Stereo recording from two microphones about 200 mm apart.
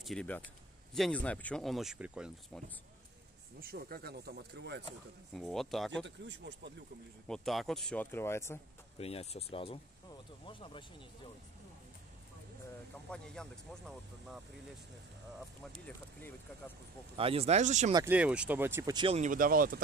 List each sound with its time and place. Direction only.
0.0 s speech: 5° left (ahead or behind)
3.6 s speech: 50° right (ahead or behind)
5.3 s speech: centre (ahead or behind)
6.0 s speech: 60° right (ahead or behind)
7.2 s speech: centre (ahead or behind)
8.9 s speech: 30° left (ahead or behind)
13.1 s speech: 5° left (ahead or behind)
16.2 s speech: 10° left (ahead or behind)
17.2 s speech: 30° right (ahead or behind)
17.9 s speech: 10° right (ahead or behind)
19.1 s speech: 40° right (ahead or behind)